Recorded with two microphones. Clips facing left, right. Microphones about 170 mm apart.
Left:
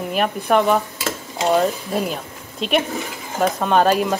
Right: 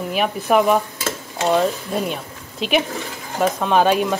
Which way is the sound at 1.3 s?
5° left (ahead or behind).